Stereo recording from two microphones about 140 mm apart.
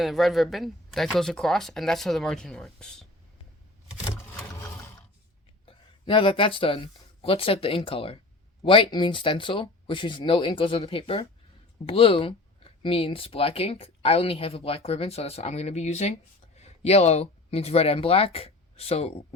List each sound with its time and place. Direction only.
0.0 s speech: centre (ahead or behind)
5.6 s speech: 40° left (ahead or behind)